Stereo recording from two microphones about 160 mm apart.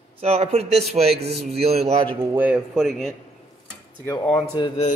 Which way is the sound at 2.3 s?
10° right (ahead or behind).